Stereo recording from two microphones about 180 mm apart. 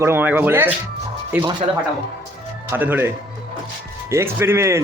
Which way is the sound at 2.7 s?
10° right (ahead or behind).